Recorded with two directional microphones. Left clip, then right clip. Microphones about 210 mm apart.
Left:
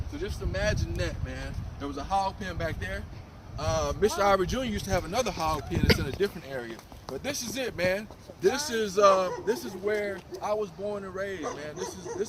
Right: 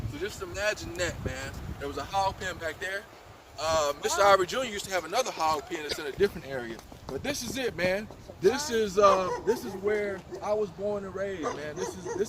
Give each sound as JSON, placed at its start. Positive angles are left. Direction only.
{"t": 0.2, "sound": "speech", "side_deg": 15}
{"t": 7.1, "sound": "speech", "side_deg": 50}
{"t": 10.4, "sound": "speech", "side_deg": 35}
{"t": 11.3, "sound": "speech", "side_deg": 25}
{"t": 12.2, "sound": "speech", "side_deg": 5}